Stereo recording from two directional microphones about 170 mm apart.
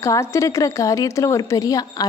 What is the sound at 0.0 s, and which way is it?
A woman's voice, 20° left (ahead or behind).